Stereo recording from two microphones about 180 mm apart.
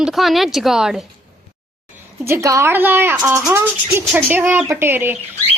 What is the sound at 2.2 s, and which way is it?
Speech, 15° right (ahead or behind).